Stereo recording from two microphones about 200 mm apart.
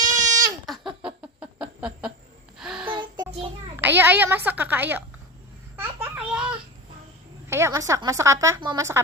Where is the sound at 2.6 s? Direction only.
5° right (ahead or behind).